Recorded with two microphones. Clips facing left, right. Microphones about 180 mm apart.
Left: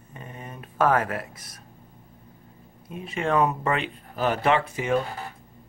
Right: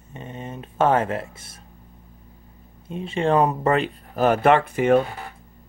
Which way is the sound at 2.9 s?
25° right (ahead or behind).